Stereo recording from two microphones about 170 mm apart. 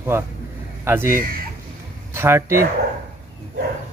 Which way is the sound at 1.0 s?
55° right (ahead or behind).